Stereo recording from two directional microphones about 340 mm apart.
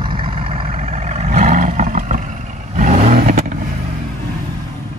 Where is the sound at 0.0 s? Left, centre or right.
Centre.